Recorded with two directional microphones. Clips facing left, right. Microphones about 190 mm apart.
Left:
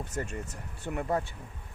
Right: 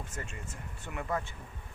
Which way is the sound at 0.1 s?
40° left (ahead or behind).